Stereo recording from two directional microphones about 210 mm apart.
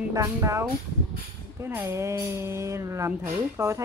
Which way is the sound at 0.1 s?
15° right (ahead or behind).